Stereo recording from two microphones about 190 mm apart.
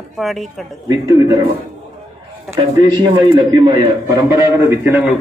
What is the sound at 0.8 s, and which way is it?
Speech, 20° right (ahead or behind).